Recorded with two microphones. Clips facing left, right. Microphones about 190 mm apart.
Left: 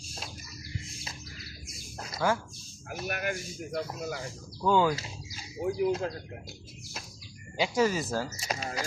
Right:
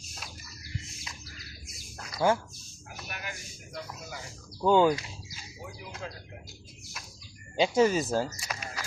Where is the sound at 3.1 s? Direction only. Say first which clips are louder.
Left 10 dB; 55° left (ahead or behind).